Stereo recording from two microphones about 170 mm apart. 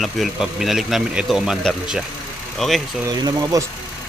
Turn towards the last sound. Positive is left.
turn(degrees=-25)  # may be behind; listen again after turning